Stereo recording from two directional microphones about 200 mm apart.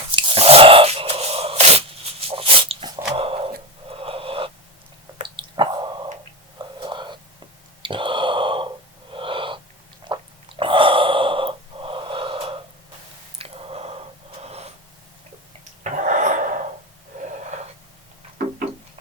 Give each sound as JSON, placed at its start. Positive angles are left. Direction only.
{"t": 0.1, "sound": "a sound", "side_deg": -25}
{"t": 2.2, "sound": "dog", "side_deg": -25}
{"t": 3.2, "sound": "a sound", "side_deg": -30}
{"t": 5.2, "sound": "drip", "side_deg": -25}
{"t": 6.7, "sound": "whispering", "side_deg": -25}
{"t": 7.8, "sound": "a sound", "side_deg": -25}
{"t": 9.1, "sound": "gasp", "side_deg": -25}
{"t": 10.6, "sound": "gasp", "side_deg": -25}
{"t": 13.4, "sound": "a sound", "side_deg": -30}
{"t": 14.4, "sound": "gasp", "side_deg": -30}
{"t": 15.8, "sound": "dog", "side_deg": -40}
{"t": 17.1, "sound": "wheeze", "side_deg": -40}